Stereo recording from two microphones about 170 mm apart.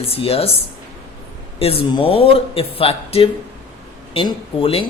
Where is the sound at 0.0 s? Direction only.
35° left (ahead or behind).